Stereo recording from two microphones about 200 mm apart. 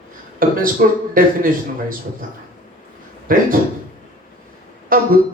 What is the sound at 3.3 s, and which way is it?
Speech, 45° right (ahead or behind).